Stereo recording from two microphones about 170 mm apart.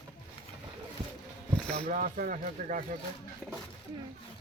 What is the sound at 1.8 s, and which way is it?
Speech, 45° right (ahead or behind).